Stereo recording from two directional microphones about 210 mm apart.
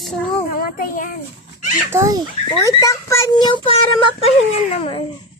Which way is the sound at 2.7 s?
15° left (ahead or behind).